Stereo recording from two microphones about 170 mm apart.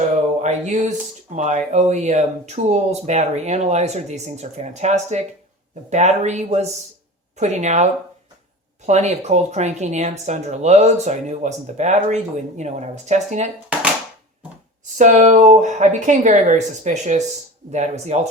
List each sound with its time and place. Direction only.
0.1 s a sound: 45° right (ahead or behind)
1.4 s speech: 45° right (ahead or behind)
8.9 s speech: 45° right (ahead or behind)
14.9 s speech: 45° right (ahead or behind)